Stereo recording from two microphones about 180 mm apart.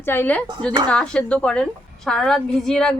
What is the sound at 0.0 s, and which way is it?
A woman's voice, 10° left (ahead or behind).